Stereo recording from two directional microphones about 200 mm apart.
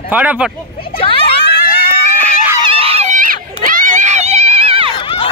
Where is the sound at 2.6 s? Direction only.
30° right (ahead or behind).